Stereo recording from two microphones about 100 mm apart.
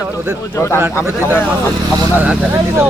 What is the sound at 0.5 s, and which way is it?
Speech, 30° left (ahead or behind).